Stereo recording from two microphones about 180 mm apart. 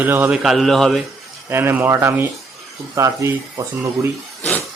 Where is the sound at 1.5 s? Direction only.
15° right (ahead or behind).